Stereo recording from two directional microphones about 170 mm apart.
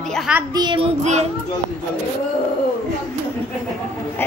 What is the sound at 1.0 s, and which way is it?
Speech, 45° right (ahead or behind).